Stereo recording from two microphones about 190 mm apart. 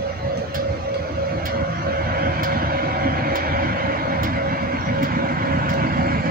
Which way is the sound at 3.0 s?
50° right (ahead or behind).